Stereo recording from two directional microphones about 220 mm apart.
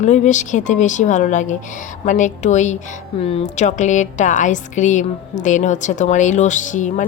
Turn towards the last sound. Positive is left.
turn(degrees=35)  # may be behind; listen again after turning